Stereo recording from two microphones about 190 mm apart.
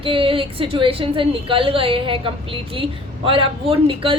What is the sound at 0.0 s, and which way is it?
A woman's voice, 30° right (ahead or behind).